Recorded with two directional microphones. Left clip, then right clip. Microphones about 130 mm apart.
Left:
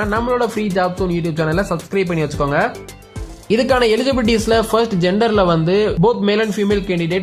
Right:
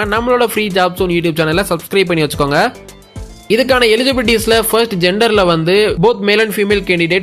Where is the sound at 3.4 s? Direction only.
10° right (ahead or behind).